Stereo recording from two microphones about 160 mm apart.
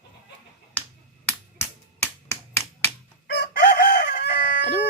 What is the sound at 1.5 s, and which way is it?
Finger snapping, 15° left (ahead or behind).